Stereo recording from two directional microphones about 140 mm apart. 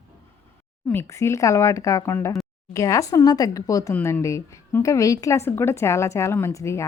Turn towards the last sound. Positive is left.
turn(degrees=20)  # may be behind; listen again after turning